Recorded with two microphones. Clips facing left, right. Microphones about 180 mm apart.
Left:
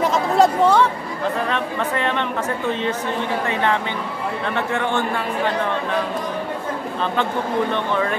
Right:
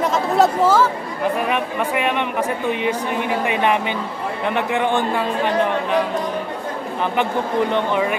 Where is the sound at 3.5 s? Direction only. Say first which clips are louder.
Right 3 dB; 15° right (ahead or behind).